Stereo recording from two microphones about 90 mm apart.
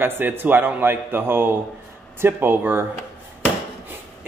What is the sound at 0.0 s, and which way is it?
A man's voice, 25° right (ahead or behind).